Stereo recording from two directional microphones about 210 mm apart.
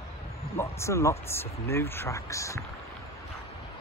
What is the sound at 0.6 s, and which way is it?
Speech, 15° left (ahead or behind).